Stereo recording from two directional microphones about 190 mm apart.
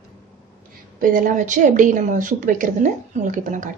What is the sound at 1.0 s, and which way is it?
A woman's voice, 45° right (ahead or behind).